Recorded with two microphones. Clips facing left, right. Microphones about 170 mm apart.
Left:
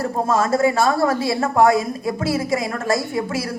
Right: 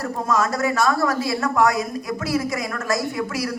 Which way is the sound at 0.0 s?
30° left (ahead or behind).